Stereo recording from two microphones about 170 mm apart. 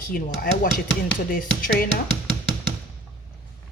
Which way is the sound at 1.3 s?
55° left (ahead or behind).